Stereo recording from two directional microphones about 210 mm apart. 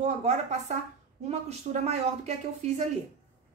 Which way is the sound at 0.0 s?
35° right (ahead or behind).